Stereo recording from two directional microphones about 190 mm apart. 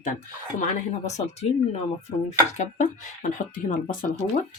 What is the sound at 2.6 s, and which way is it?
Speech, 40° left (ahead or behind).